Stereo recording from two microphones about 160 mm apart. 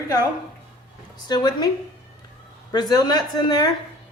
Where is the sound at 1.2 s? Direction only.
25° left (ahead or behind).